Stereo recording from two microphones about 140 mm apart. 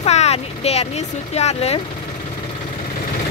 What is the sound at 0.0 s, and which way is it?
Speech, 50° left (ahead or behind).